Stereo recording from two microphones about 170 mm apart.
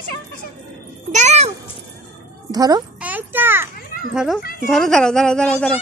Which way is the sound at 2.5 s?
20° right (ahead or behind).